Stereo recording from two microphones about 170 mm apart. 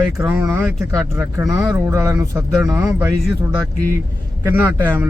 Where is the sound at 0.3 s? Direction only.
15° right (ahead or behind).